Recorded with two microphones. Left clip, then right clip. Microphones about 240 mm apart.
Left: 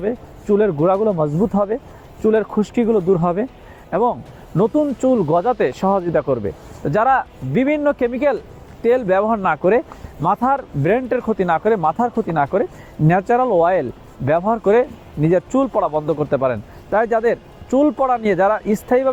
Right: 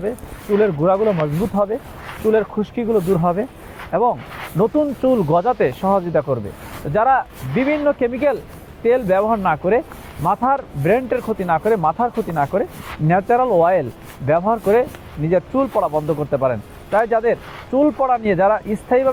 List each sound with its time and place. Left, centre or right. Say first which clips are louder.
0.6 s speech: right 1 dB; left